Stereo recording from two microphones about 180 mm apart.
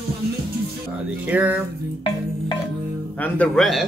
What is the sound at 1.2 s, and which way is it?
Speech, 10° right (ahead or behind).